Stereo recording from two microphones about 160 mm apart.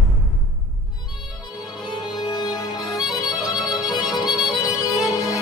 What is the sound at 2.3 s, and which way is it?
Music, 25° left (ahead or behind).